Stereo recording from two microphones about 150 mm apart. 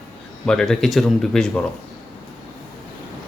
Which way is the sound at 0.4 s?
5° left (ahead or behind).